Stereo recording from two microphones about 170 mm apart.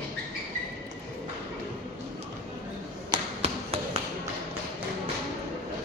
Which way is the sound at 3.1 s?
35° right (ahead or behind).